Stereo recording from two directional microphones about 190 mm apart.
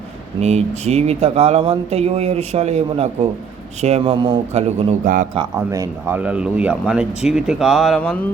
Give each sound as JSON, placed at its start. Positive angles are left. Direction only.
{"t": 0.3, "sound": "speech", "side_deg": -35}
{"t": 5.5, "sound": "speech", "side_deg": -15}